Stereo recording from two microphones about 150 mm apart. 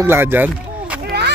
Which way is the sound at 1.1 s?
90° right.